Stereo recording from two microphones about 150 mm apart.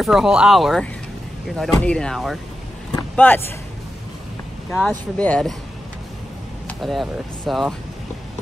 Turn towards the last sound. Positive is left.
turn(degrees=0)  # may be behind; listen again after turning